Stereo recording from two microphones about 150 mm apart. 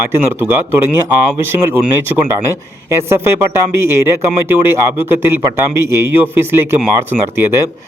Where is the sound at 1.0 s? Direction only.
15° right (ahead or behind).